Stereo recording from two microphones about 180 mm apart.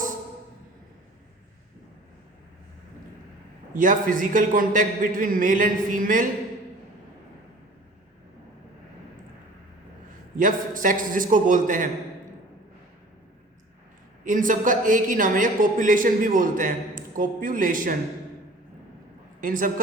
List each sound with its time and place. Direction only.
3.8 s a man's voice: 45° right (ahead or behind)
10.3 s a man's voice: 45° right (ahead or behind)
14.3 s a man's voice: 45° right (ahead or behind)
19.4 s a man's voice: 50° right (ahead or behind)